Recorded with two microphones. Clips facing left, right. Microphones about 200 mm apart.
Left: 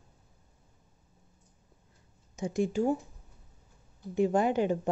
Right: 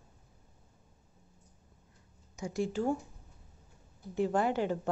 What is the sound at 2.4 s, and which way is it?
Speech, 20° left (ahead or behind).